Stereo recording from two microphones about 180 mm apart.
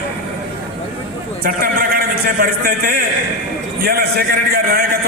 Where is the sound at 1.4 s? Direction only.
55° right (ahead or behind).